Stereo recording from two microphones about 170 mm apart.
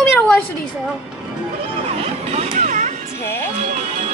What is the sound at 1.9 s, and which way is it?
Vehicle, 40° right (ahead or behind).